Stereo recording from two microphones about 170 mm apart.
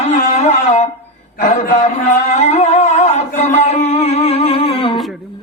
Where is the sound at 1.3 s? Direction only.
45° left (ahead or behind).